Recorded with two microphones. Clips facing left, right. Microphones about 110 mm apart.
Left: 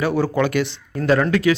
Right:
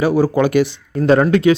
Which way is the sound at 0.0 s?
15° right (ahead or behind).